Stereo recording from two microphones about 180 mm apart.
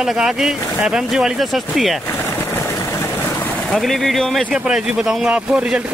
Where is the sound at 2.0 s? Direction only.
10° left (ahead or behind).